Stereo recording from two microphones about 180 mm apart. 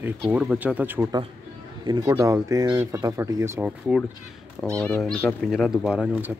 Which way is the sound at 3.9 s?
5° right (ahead or behind).